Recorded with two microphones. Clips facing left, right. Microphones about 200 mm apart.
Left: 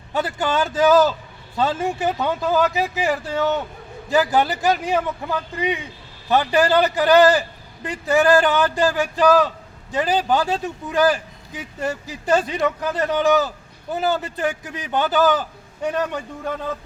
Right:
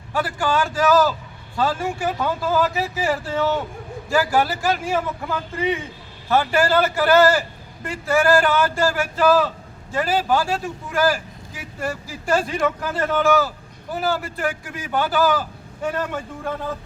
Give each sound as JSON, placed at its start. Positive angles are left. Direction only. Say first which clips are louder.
{"t": 0.1, "sound": "speech", "louder": "even", "side_deg": 20}